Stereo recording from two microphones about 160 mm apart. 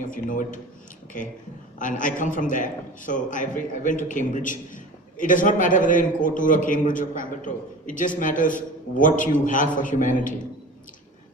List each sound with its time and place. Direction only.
0.0 s a man's voice: 55° left (ahead or behind)
1.8 s a man's voice: 55° left (ahead or behind)